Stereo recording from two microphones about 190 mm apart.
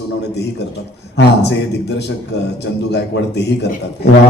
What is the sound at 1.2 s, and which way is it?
A man's voice, 60° left (ahead or behind).